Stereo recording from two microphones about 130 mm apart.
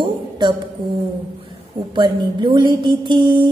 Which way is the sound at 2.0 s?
35° right (ahead or behind).